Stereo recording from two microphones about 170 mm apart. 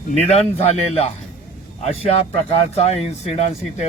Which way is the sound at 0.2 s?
40° left (ahead or behind).